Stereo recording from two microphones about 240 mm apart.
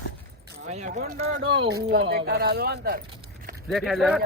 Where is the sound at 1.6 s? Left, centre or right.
Right.